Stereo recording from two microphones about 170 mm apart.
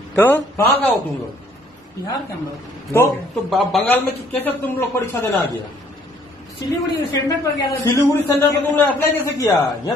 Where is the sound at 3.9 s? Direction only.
10° left (ahead or behind).